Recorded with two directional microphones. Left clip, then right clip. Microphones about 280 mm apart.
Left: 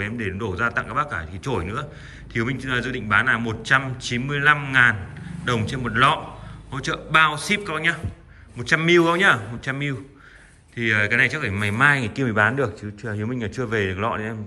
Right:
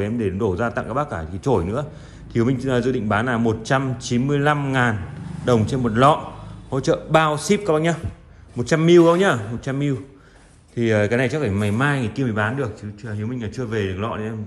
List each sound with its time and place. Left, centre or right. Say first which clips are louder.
0.0 s a man's voice: right 5 dB; centre